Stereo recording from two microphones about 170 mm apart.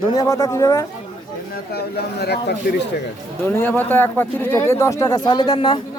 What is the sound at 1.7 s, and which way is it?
Speech, 70° left (ahead or behind).